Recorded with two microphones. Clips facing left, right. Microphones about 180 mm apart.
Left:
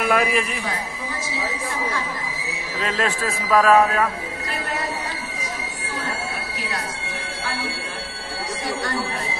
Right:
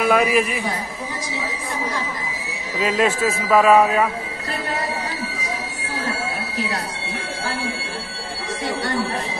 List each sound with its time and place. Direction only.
0.1 s speech: 5° right (ahead or behind)
2.8 s speech: 5° right (ahead or behind)